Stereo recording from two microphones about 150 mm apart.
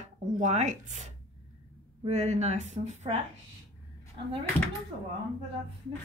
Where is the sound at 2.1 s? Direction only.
50° right (ahead or behind).